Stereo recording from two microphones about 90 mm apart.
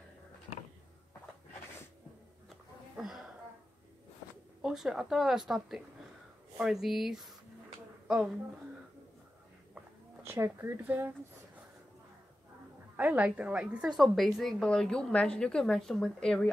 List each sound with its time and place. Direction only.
2.5 s a sound: 5° right (ahead or behind)
4.6 s speech: 5° right (ahead or behind)
6.6 s a woman's voice: 5° right (ahead or behind)
10.2 s speech: 25° right (ahead or behind)
12.9 s a woman's voice: 15° right (ahead or behind); by 16.5 s 10° left (ahead or behind)